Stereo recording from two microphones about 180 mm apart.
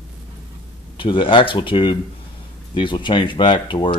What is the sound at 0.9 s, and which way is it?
Speech, 25° left (ahead or behind).